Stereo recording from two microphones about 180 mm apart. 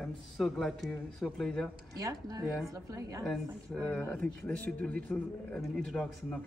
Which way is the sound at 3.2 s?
5° left (ahead or behind).